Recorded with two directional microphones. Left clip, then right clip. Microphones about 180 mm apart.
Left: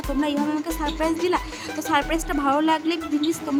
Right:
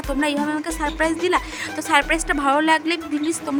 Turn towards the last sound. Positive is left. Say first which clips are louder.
# right 1 dB
turn(degrees=-25)  # may be behind; listen again after turning